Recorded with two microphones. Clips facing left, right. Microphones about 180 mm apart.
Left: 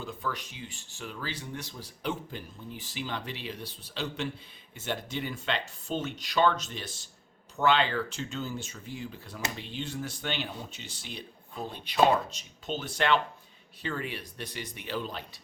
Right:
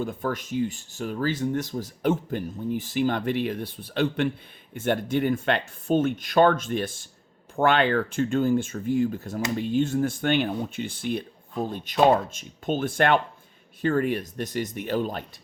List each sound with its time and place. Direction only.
0.0 s speech: 50° right (ahead or behind)